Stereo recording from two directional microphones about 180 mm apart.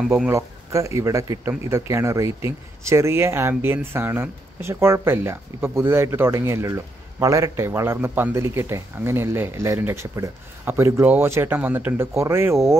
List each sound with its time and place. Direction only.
0.3 s speech: 15° right (ahead or behind)